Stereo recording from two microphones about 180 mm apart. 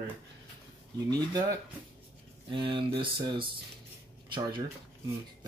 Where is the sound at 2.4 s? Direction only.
30° right (ahead or behind).